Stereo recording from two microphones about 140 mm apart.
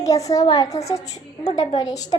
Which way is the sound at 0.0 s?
25° left (ahead or behind).